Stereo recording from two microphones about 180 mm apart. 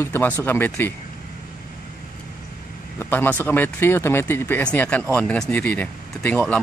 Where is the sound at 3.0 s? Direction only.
10° left (ahead or behind).